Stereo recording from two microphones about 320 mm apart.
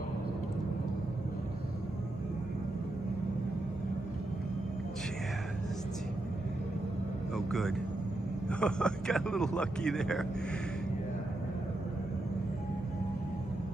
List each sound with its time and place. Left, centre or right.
7.3 s vehicle: centre
8.5 s a man's voice: centre